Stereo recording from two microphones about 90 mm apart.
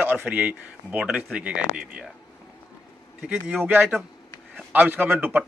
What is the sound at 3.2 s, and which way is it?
A man's voice, 15° right (ahead or behind).